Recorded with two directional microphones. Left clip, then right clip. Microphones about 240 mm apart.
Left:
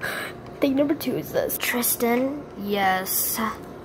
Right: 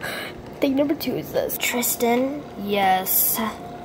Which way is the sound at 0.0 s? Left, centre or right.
Centre.